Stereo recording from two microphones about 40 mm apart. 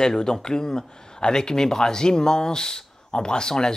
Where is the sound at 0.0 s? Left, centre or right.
Centre.